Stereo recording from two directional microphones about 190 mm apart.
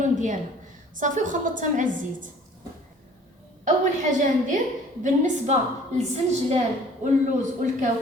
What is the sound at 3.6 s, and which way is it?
Speech, 40° right (ahead or behind).